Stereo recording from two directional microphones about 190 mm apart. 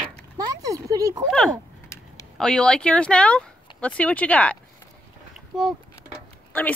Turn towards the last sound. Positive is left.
turn(degrees=5)  # may be behind; listen again after turning